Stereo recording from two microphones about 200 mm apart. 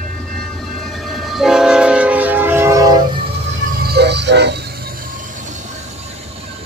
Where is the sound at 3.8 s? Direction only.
55° right (ahead or behind).